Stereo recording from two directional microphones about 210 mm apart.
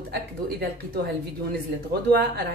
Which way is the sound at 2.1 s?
50° right (ahead or behind).